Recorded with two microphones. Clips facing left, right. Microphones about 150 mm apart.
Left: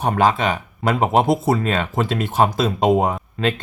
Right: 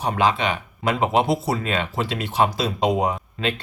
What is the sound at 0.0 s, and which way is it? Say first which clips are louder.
Speech: left 3 dB; 45° left (ahead or behind).